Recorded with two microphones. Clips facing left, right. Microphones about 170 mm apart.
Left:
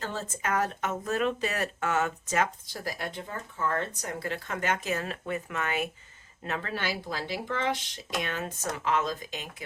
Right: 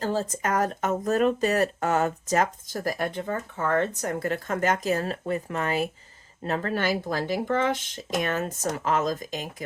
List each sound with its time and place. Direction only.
0.0 s speech: 35° right (ahead or behind)